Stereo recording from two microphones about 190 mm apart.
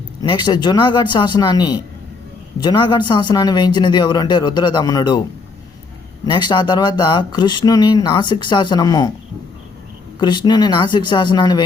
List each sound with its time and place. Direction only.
0.2 s speech: 25° left (ahead or behind)
6.2 s speech: 25° left (ahead or behind)
10.2 s speech: 20° left (ahead or behind)